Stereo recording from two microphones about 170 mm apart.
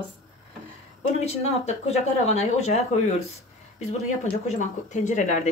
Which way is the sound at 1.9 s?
40° left (ahead or behind).